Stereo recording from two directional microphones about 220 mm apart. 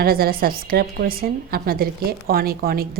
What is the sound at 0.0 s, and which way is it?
A woman's voice, 45° right (ahead or behind).